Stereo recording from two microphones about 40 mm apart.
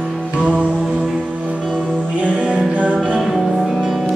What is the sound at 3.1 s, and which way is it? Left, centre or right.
Music, centre.